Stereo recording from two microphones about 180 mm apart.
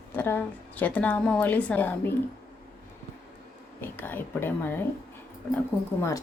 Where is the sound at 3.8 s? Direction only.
10° left (ahead or behind).